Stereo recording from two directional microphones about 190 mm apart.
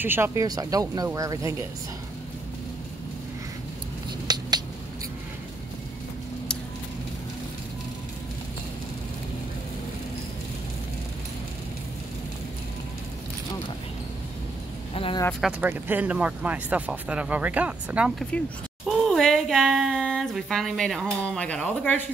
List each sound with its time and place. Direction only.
0.0 s speech: 10° right (ahead or behind)
4.3 s a sound: 20° right (ahead or behind)
15.0 s vehicle: 25° left (ahead or behind)
15.4 s speech: 10° right (ahead or behind)
18.3 s speech: 5° left (ahead or behind)